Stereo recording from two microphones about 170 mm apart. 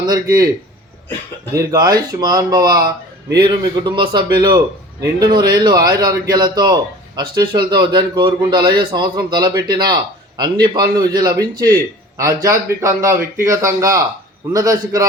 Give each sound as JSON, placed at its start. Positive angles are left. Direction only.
{"t": 0.0, "sound": "a man's voice", "side_deg": -20}
{"t": 1.5, "sound": "a man's voice", "side_deg": -25}